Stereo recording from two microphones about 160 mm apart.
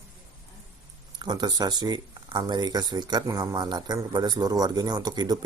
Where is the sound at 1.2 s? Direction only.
25° right (ahead or behind).